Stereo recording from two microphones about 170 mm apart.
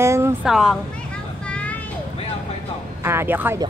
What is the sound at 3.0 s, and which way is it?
Speech, 15° right (ahead or behind).